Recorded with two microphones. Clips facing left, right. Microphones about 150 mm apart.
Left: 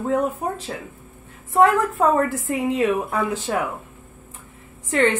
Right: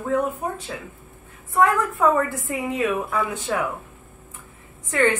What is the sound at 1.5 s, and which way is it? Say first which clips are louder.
A woman's voice: left 3 dB; 30° left (ahead or behind).